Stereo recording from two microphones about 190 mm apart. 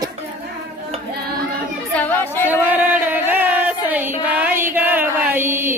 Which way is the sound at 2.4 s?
10° right (ahead or behind).